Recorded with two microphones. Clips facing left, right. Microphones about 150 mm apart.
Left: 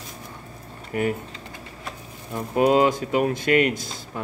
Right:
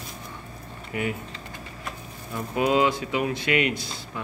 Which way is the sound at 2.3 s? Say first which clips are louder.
Left 4 dB; 40° left (ahead or behind).